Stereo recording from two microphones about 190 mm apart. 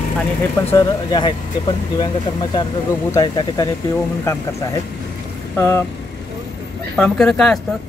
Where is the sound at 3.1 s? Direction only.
20° left (ahead or behind).